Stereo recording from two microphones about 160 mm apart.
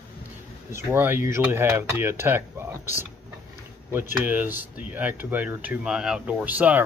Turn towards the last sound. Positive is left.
turn(degrees=-10)  # may be behind; listen again after turning